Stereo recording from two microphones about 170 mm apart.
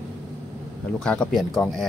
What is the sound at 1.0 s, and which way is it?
Speech, 5° left (ahead or behind).